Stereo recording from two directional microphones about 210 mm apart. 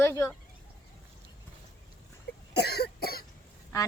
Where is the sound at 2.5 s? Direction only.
50° left (ahead or behind).